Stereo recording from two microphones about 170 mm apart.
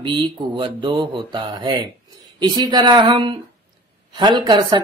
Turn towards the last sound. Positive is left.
turn(degrees=-25)  # may be behind; listen again after turning